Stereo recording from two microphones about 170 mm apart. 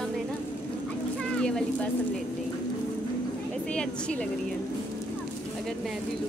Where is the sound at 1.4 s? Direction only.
5° left (ahead or behind).